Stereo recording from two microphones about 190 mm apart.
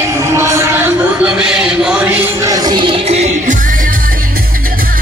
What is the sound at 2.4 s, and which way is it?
Music, 20° right (ahead or behind).